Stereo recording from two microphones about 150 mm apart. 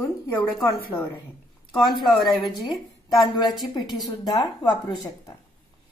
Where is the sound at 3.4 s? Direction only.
30° left (ahead or behind).